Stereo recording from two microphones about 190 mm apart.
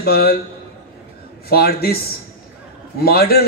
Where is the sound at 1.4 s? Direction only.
55° left (ahead or behind).